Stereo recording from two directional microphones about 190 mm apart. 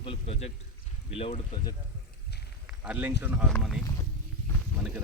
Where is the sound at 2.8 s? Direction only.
10° right (ahead or behind).